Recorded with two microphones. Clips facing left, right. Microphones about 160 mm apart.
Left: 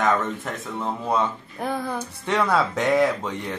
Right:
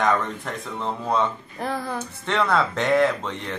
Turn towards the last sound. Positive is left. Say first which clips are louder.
# even
turn(degrees=10)  # may be behind; listen again after turning